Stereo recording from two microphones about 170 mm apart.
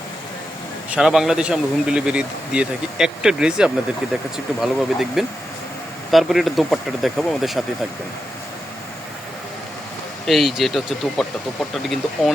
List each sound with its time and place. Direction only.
0.9 s speech: 5° right (ahead or behind)
10.2 s speech: centre (ahead or behind)